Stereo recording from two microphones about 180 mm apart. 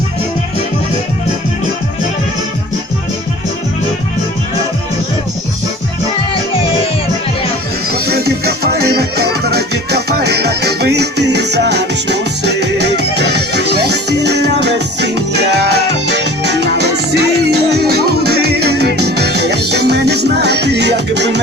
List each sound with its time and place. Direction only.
7.9 s music: 60° right (ahead or behind)